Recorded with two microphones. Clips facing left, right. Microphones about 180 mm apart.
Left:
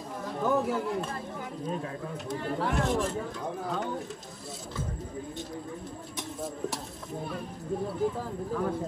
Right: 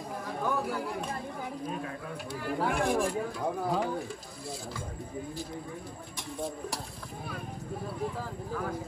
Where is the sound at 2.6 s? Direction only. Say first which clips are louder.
Right 1 dB; 15° right (ahead or behind).